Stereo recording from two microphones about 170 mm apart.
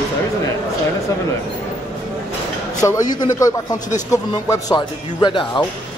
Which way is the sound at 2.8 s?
20° left (ahead or behind).